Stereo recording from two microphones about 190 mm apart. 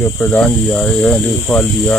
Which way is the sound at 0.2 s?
Centre (ahead or behind).